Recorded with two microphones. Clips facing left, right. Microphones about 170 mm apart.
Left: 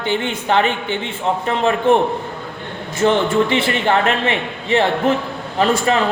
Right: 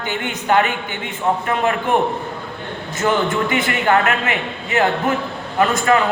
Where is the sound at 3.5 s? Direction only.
30° left (ahead or behind).